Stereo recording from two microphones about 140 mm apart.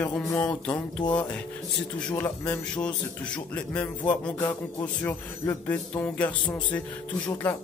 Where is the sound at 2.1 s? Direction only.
20° left (ahead or behind).